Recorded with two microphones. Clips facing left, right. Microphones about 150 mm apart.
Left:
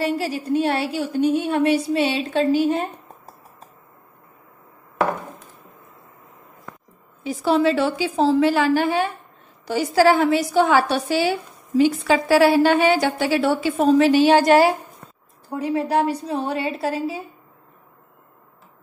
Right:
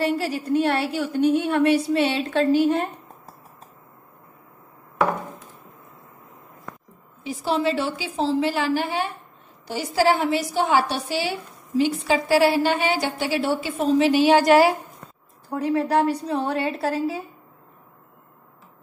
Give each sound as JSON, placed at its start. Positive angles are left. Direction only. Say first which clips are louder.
{"t": 0.0, "sound": "a woman's voice", "louder": "even", "side_deg": 15}
{"t": 7.2, "sound": "a woman's voice", "louder": "left 5 dB", "side_deg": 55}
{"t": 14.1, "sound": "a woman's voice", "louder": "left 1 dB", "side_deg": 30}
{"t": 15.5, "sound": "a woman's voice", "louder": "even", "side_deg": 15}